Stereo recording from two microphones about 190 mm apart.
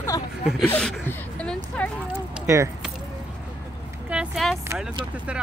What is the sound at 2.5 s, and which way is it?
Speech, 15° right (ahead or behind).